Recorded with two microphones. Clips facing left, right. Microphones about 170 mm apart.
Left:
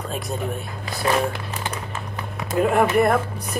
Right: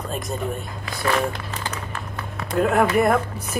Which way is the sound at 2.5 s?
Centre (ahead or behind).